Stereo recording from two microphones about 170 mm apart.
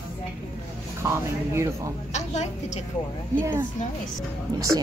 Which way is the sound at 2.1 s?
40° left (ahead or behind).